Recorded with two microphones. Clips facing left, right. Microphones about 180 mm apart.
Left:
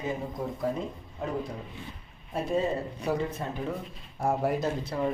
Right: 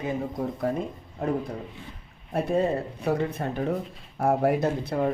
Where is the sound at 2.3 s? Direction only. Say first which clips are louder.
Right 4 dB; 60° right (ahead or behind).